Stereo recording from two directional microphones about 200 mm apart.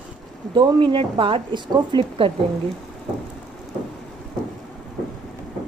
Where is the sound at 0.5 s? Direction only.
25° right (ahead or behind).